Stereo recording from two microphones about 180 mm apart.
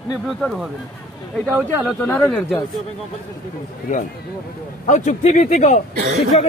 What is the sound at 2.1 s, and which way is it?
Speech, 10° left (ahead or behind).